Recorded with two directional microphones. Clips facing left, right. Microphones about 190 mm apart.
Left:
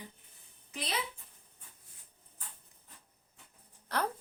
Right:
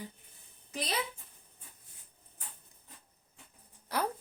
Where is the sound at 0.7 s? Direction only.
35° right (ahead or behind).